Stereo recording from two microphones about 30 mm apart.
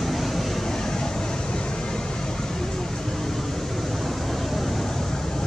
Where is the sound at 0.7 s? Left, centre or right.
Centre.